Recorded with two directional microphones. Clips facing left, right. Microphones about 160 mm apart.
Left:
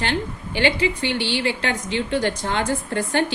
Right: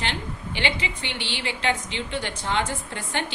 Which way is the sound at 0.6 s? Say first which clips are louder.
Left 9 dB; 50° left (ahead or behind).